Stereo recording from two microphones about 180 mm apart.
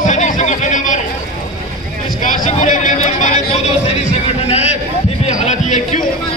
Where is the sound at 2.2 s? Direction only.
45° left (ahead or behind).